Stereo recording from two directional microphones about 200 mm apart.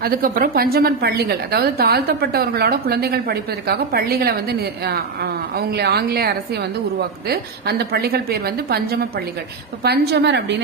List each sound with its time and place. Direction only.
0.0 s a woman's voice: 45° right (ahead or behind)